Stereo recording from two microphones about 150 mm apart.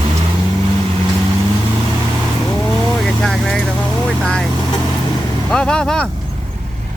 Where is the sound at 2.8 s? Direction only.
5° left (ahead or behind).